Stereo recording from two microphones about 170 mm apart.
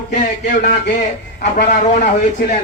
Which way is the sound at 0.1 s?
45° left (ahead or behind).